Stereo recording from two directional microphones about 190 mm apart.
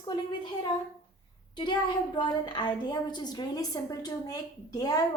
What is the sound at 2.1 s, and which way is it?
A woman's voice, 25° left (ahead or behind).